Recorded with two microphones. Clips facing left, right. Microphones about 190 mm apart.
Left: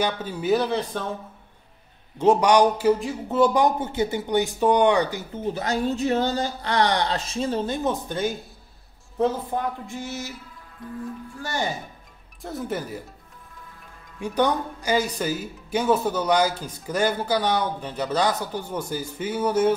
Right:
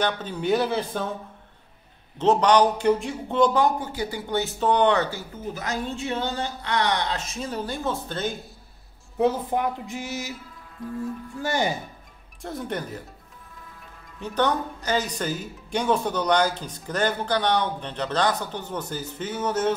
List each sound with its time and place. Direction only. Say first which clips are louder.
0.0 s speech: even; 10° left (ahead or behind)
2.1 s speech: left 1 dB; 10° left (ahead or behind)
5.5 s speech: left 5 dB; 30° left (ahead or behind); by 8.4 s 10° left (ahead or behind)
9.2 s speech: right 1 dB; 15° right (ahead or behind)
10.8 s speech: right 3 dB; centre (ahead or behind)
12.4 s speech: left 1 dB; centre (ahead or behind)
14.2 s speech: left 2 dB; 10° left (ahead or behind)